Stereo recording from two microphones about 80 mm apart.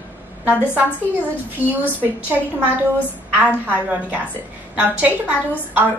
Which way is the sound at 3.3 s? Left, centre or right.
Centre.